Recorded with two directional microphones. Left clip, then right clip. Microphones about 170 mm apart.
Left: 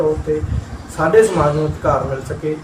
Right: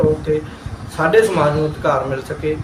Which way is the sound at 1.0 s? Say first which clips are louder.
Left 1 dB; 15° right (ahead or behind).